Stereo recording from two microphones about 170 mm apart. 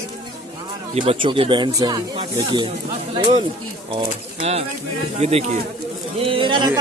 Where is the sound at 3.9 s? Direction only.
35° right (ahead or behind).